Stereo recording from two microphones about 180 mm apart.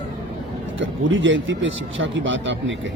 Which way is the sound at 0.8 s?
90° right.